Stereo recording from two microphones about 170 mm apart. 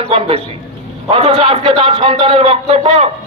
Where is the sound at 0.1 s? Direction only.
35° right (ahead or behind).